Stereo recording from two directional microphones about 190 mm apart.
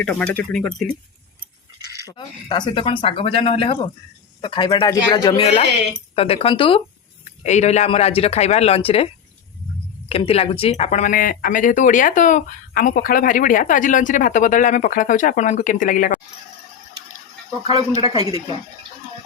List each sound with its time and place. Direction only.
0.0 s speech: 5° left (ahead or behind)
2.0 s speech: 25° left (ahead or behind)
6.1 s speech: 30° left (ahead or behind)
10.1 s speech: 30° left (ahead or behind)
18.3 s speech: 20° right (ahead or behind)